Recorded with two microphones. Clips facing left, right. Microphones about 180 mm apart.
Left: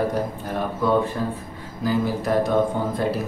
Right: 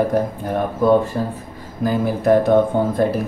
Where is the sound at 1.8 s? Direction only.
55° right (ahead or behind).